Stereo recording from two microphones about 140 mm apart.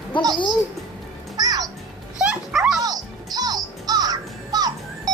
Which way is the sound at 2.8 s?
30° right (ahead or behind).